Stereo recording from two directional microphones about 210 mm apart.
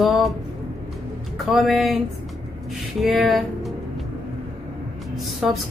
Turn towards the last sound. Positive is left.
turn(degrees=0)  # may be behind; listen again after turning